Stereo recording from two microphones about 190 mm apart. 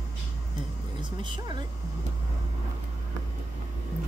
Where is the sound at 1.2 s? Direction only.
25° right (ahead or behind).